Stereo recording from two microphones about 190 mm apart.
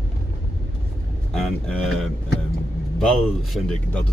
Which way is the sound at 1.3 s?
Centre (ahead or behind).